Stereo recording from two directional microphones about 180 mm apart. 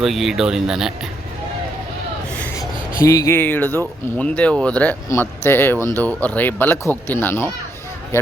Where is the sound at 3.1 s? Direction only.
15° left (ahead or behind).